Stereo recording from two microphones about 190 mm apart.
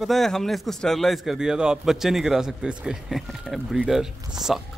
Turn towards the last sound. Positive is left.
turn(degrees=0)  # may be behind; listen again after turning